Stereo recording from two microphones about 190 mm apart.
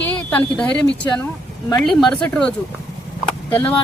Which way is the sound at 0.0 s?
10° left (ahead or behind).